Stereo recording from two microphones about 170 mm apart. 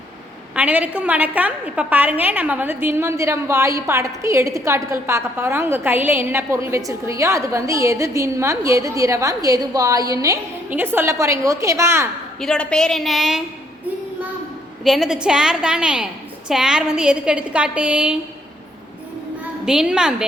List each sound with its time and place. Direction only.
0.5 s a woman's voice: 10° right (ahead or behind)
12.4 s a woman's voice: 5° left (ahead or behind)
14.8 s a woman's voice: centre (ahead or behind)
19.6 s a woman's voice: 5° right (ahead or behind)